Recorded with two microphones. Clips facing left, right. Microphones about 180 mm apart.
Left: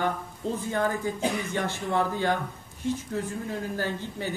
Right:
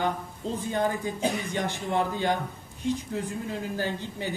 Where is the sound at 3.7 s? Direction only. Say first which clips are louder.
Even; 15° right (ahead or behind).